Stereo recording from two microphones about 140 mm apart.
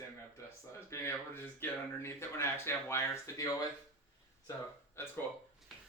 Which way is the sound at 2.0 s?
20° left (ahead or behind).